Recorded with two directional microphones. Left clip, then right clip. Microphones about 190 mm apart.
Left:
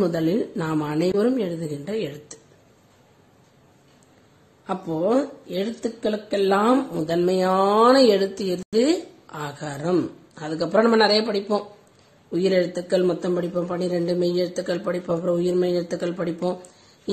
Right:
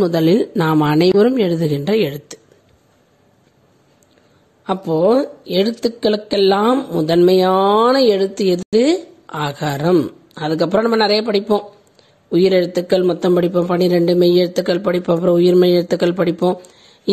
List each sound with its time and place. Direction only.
0.0 s a woman's voice: 45° right (ahead or behind)
4.6 s speech: 50° right (ahead or behind)